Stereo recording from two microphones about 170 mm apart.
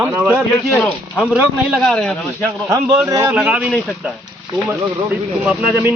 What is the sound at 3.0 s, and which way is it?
Speech, 20° right (ahead or behind).